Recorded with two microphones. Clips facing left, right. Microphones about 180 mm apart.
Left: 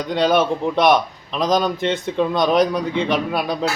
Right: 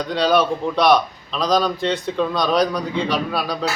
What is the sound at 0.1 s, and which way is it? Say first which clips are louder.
A man's voice: left 1 dB; 20° left (ahead or behind).